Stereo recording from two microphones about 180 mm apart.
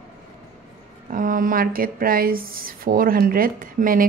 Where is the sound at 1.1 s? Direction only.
50° right (ahead or behind).